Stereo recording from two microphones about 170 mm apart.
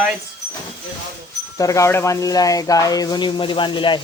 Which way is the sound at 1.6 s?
20° left (ahead or behind).